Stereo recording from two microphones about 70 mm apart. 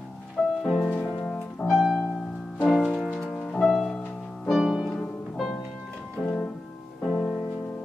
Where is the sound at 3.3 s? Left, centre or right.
Centre.